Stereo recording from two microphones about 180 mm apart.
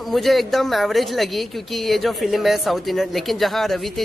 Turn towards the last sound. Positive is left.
turn(degrees=0)  # may be behind; listen again after turning